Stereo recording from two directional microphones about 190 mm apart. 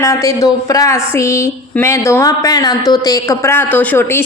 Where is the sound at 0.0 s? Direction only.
15° left (ahead or behind).